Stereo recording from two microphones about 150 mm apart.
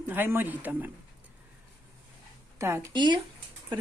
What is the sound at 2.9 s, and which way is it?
Speech, 30° right (ahead or behind).